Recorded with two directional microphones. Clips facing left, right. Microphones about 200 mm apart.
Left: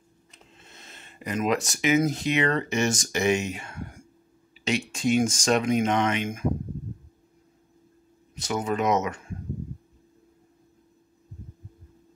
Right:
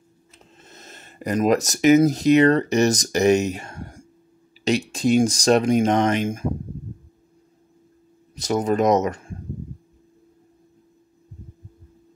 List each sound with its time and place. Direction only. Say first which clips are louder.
0.6 s speech: right 6 dB; 40° right (ahead or behind)
8.4 s speech: right 6 dB; 35° right (ahead or behind)